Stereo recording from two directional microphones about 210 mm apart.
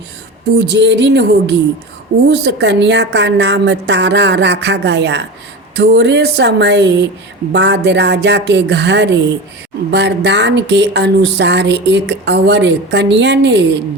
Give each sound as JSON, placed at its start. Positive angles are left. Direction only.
{"t": 0.6, "sound": "speech", "side_deg": -55}